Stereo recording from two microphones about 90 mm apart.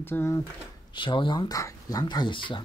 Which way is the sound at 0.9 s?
65° left (ahead or behind).